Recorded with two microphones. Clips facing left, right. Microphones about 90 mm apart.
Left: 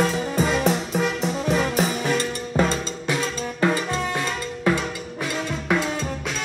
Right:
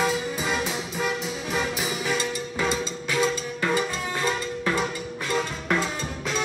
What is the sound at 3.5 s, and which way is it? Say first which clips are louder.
Music: left 7 dB; 20° left (ahead or behind).